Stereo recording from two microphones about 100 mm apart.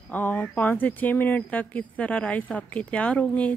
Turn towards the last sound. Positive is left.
turn(degrees=15)  # may be behind; listen again after turning